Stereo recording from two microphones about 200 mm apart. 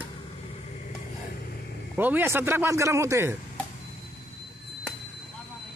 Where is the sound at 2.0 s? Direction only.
10° right (ahead or behind).